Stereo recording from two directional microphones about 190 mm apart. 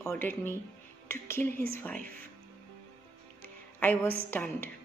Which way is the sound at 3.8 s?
10° left (ahead or behind).